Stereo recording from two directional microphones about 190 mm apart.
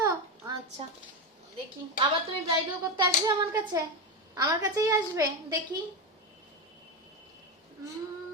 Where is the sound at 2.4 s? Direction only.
25° right (ahead or behind).